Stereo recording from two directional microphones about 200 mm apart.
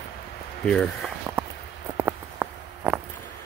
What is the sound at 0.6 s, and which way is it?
Speech, 5° left (ahead or behind).